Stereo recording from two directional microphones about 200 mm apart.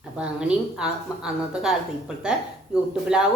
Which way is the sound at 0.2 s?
5° right (ahead or behind).